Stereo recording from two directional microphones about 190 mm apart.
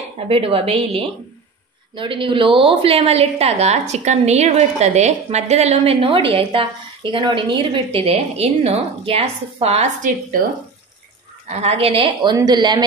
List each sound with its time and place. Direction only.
0.3 s a woman's voice: 30° right (ahead or behind)
11.4 s a woman's voice: 30° right (ahead or behind)